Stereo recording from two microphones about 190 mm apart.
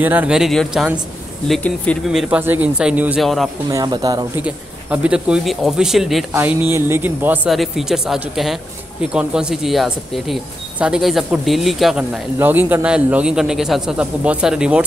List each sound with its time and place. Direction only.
0.0 s speech: 10° right (ahead or behind)
3.6 s speech: 20° right (ahead or behind)
4.4 s speech: 10° right (ahead or behind)